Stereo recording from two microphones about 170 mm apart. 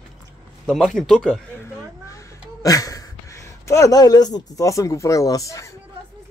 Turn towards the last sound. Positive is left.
turn(degrees=20)  # may be behind; listen again after turning